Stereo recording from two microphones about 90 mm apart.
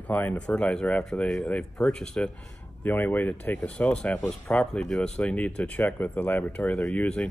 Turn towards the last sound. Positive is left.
turn(degrees=10)  # may be behind; listen again after turning